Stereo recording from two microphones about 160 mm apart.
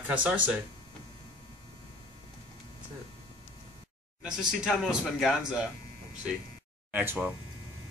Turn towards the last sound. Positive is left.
turn(degrees=-10)  # may be behind; listen again after turning